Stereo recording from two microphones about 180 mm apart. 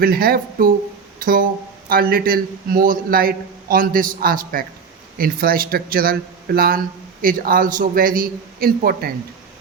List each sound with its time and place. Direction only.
0.0 s a man's voice: 55° right (ahead or behind)